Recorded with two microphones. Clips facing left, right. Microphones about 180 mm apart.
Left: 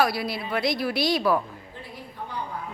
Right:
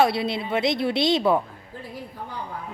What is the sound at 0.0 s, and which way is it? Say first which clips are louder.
Speech: right 3 dB; 25° right (ahead or behind).